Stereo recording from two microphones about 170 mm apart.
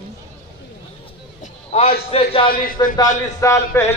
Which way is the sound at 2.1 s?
35° left (ahead or behind).